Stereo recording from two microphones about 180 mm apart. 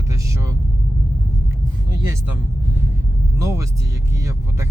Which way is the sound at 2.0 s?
15° right (ahead or behind).